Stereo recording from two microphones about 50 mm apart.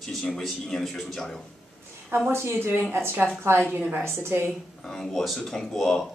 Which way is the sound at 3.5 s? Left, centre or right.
Right.